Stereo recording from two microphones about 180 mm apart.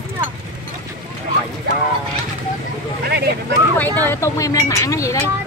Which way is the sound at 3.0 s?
65° right (ahead or behind).